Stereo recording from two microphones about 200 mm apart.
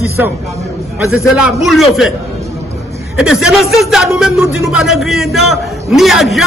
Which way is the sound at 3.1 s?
5° right (ahead or behind).